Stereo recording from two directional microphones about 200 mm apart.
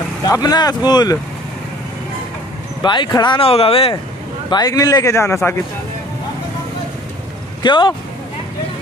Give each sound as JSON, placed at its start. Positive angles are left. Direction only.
{"t": 0.2, "sound": "speech", "side_deg": 20}
{"t": 2.8, "sound": "speech", "side_deg": 20}
{"t": 7.6, "sound": "speech", "side_deg": 25}